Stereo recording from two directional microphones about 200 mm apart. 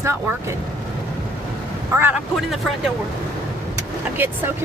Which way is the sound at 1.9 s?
10° right (ahead or behind).